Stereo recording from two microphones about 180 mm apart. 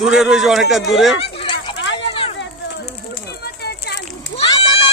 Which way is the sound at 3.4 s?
65° left (ahead or behind).